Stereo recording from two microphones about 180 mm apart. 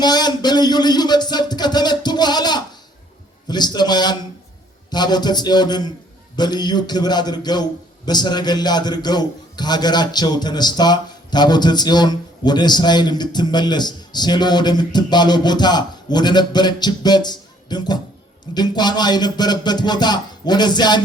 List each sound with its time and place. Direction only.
0.0 s music: 25° left (ahead or behind)
3.5 s a man's voice: 25° left (ahead or behind)